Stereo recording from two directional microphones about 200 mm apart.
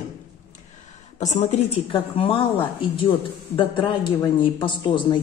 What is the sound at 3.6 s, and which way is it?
Speech, 25° left (ahead or behind).